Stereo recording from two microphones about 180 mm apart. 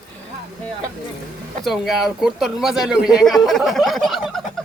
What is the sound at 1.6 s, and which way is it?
Speech, centre (ahead or behind).